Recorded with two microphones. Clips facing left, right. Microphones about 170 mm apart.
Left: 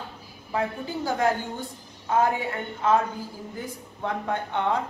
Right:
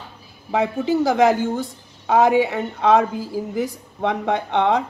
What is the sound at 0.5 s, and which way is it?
A woman's voice, 90° right.